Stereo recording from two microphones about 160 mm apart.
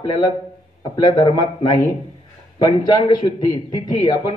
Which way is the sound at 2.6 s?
25° left (ahead or behind).